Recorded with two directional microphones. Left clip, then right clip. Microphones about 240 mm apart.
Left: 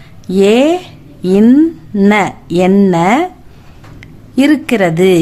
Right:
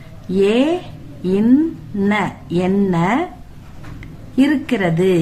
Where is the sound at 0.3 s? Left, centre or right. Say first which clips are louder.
Left 6 dB; left.